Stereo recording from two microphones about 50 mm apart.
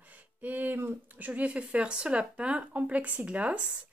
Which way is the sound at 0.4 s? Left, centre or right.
Right.